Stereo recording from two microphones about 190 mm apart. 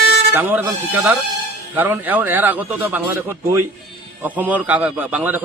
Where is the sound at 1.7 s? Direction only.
10° right (ahead or behind).